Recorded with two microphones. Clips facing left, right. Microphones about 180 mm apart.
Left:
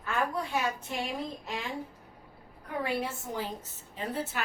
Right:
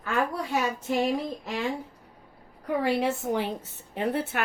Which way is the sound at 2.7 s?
80° right.